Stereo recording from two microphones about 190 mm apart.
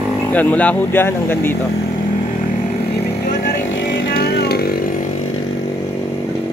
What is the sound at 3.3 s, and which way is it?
Vehicle, 65° left (ahead or behind).